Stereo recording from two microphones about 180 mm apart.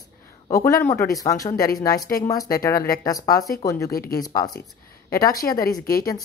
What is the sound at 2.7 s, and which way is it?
Speech, 55° left (ahead or behind).